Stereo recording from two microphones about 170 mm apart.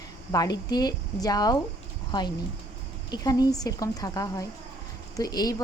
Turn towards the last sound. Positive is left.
turn(degrees=20)  # may be behind; listen again after turning